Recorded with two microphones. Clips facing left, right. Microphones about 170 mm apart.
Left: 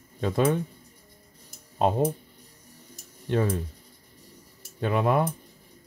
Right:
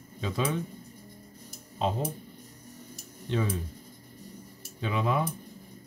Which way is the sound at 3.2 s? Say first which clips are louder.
Left 5 dB; 50° left (ahead or behind).